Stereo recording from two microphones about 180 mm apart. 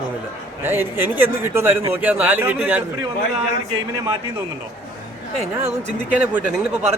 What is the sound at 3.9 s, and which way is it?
Speech, 20° right (ahead or behind).